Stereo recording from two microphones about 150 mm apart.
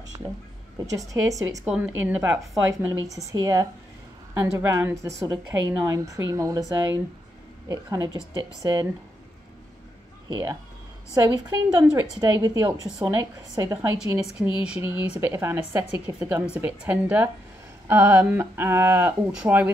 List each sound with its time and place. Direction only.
0.1 s a woman's voice: 25° right (ahead or behind)
1.7 s speech: 10° right (ahead or behind)
2.7 s a woman's voice: 20° right (ahead or behind)
7.6 s a woman's voice: 25° right (ahead or behind)
10.2 s a woman's voice: 25° right (ahead or behind)
14.4 s speech: 5° right (ahead or behind)